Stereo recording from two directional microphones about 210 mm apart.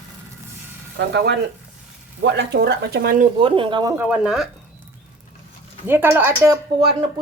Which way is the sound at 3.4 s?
25° right (ahead or behind).